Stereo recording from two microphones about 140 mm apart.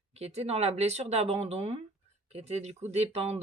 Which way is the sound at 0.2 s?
50° right (ahead or behind).